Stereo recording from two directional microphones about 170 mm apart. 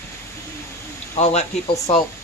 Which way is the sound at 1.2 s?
40° left (ahead or behind).